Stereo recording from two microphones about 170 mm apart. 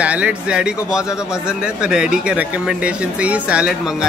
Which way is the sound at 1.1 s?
15° left (ahead or behind).